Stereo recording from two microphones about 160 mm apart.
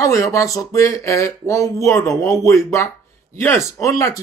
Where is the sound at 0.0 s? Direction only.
20° left (ahead or behind).